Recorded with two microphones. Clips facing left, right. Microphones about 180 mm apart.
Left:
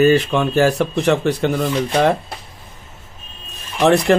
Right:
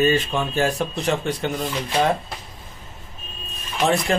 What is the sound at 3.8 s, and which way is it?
Speech, 70° left (ahead or behind).